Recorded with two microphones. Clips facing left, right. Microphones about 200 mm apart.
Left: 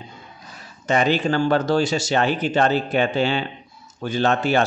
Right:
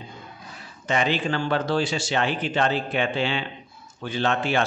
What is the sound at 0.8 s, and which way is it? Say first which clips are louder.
Speech: left 5 dB; 40° left (ahead or behind).